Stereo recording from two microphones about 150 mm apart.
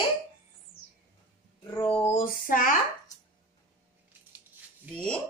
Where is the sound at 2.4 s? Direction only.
65° left (ahead or behind).